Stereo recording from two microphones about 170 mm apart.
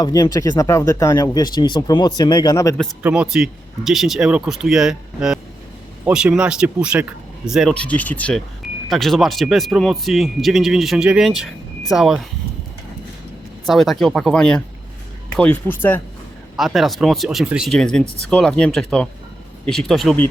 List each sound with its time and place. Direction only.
0.0 s speech: 20° left (ahead or behind)
3.0 s a man's voice: 5° right (ahead or behind)
7.7 s a man's voice: 5° left (ahead or behind)
13.7 s a man's voice: centre (ahead or behind)
16.6 s a man's voice: centre (ahead or behind)